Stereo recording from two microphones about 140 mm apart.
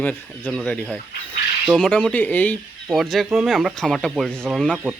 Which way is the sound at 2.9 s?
Centre (ahead or behind).